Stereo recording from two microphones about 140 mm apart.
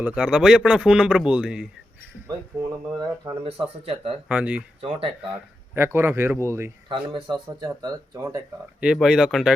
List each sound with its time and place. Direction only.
0.0 s speech: 5° right (ahead or behind)
3.2 s speech: 40° right (ahead or behind)
4.3 s speech: 10° right (ahead or behind)
4.8 s speech: 45° right (ahead or behind)
5.3 s speech: 15° right (ahead or behind)
6.8 s speech: 35° right (ahead or behind)
8.8 s speech: 5° right (ahead or behind)